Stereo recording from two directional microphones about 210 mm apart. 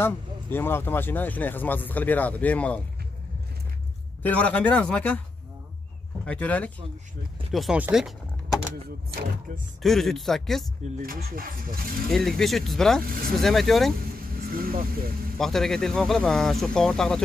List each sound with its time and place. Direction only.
0.0 s speech: 10° left (ahead or behind)
4.2 s speech: 5° left (ahead or behind)
6.2 s speech: 5° left (ahead or behind)
9.8 s speech: centre (ahead or behind)
10.8 s speech: 45° right (ahead or behind)
12.1 s speech: centre (ahead or behind)
14.5 s speech: 45° right (ahead or behind)
15.3 s speech: centre (ahead or behind)